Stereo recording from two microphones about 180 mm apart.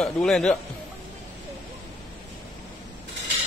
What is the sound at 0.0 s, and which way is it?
Speech, 5° left (ahead or behind).